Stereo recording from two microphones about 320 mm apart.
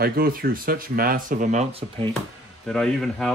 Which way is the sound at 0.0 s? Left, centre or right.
Right.